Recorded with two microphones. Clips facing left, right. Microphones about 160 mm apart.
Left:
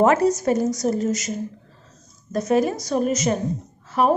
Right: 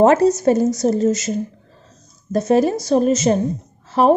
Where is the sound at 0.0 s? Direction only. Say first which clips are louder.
Right 5 dB; 25° right (ahead or behind).